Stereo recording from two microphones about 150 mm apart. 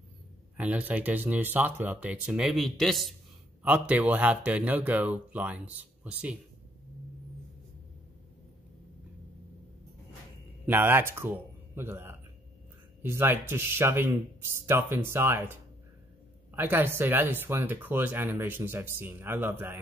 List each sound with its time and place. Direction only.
0.6 s speech: 10° right (ahead or behind)
10.7 s speech: 15° right (ahead or behind)
16.5 s speech: 15° right (ahead or behind)